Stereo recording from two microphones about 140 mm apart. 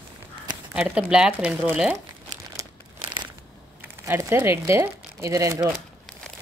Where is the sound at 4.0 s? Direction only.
20° right (ahead or behind).